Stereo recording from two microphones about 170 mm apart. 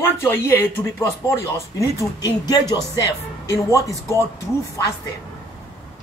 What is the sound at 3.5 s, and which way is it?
Music, 20° left (ahead or behind).